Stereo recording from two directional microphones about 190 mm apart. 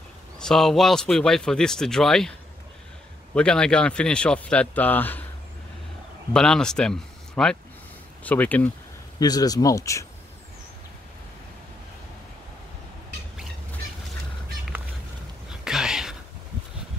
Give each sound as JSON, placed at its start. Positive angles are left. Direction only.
{"t": 0.4, "sound": "speech", "side_deg": 0}
{"t": 3.3, "sound": "speech", "side_deg": 5}
{"t": 6.3, "sound": "speech", "side_deg": 5}
{"t": 9.2, "sound": "speech", "side_deg": 20}
{"t": 15.6, "sound": "a sound", "side_deg": -5}